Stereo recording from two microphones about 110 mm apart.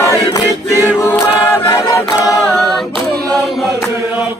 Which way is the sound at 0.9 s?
20° left (ahead or behind).